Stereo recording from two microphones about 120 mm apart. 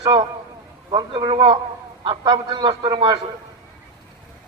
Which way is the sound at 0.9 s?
40° right (ahead or behind).